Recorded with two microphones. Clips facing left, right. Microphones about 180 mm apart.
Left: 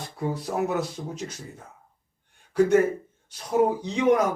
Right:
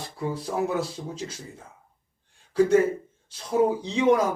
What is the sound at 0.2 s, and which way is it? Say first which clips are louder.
Speech: even; 30° right (ahead or behind).